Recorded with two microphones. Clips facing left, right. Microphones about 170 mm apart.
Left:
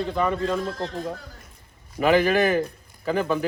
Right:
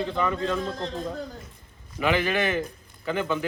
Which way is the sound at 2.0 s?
40° left (ahead or behind).